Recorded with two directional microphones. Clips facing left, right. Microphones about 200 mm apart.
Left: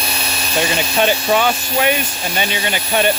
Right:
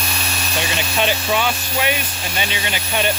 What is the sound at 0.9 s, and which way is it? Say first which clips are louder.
Speech: left 4 dB; 45° left (ahead or behind).